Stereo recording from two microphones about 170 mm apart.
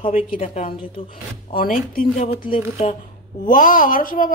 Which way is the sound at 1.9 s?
55° left (ahead or behind).